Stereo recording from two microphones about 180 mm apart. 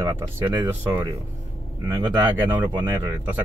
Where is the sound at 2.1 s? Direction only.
25° right (ahead or behind).